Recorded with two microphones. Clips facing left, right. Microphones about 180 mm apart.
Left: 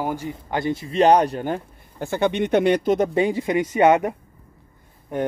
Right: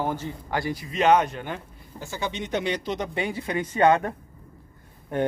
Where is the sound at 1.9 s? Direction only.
60° left (ahead or behind).